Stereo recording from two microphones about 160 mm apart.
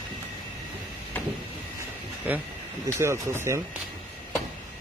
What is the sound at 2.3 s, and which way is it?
Speech, 10° right (ahead or behind).